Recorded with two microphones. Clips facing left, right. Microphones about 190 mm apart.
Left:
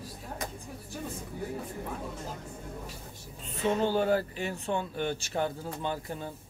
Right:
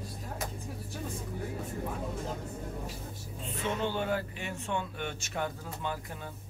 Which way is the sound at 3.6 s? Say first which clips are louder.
Left 6 dB; 35° left (ahead or behind).